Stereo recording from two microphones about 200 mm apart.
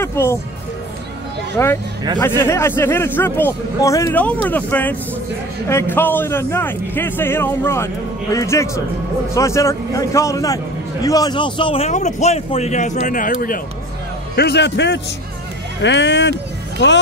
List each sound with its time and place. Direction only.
0.0 s speech: 10° left (ahead or behind)
1.6 s a man's voice: 15° left (ahead or behind); by 13.6 s 45° left (ahead or behind)
14.3 s a man's voice: 55° left (ahead or behind)